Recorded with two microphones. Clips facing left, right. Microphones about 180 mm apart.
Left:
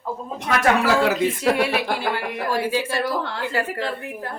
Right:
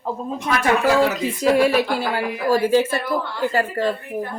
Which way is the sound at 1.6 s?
40° right (ahead or behind).